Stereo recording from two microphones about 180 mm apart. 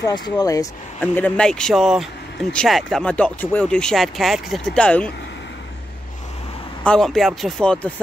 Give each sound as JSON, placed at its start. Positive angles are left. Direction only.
{"t": 0.0, "sound": "speech", "side_deg": 20}
{"t": 1.0, "sound": "speech", "side_deg": 10}
{"t": 6.8, "sound": "speech", "side_deg": 5}